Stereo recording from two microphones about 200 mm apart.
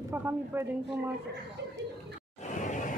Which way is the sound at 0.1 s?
10° right (ahead or behind).